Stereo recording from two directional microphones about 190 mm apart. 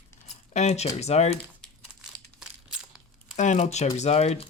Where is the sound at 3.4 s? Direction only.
40° left (ahead or behind).